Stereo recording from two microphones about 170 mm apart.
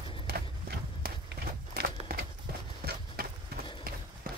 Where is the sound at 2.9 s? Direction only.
65° right (ahead or behind).